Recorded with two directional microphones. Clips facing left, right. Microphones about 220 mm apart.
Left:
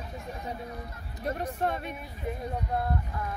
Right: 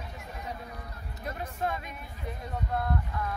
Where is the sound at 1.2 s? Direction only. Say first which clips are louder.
Left 6 dB; 35° left (ahead or behind).